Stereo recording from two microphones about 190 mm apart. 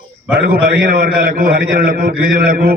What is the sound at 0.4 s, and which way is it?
A man's voice, 50° right (ahead or behind).